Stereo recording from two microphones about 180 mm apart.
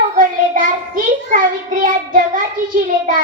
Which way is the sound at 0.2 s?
50° right (ahead or behind).